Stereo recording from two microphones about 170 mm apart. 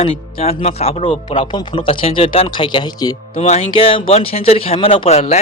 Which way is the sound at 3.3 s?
40° left (ahead or behind).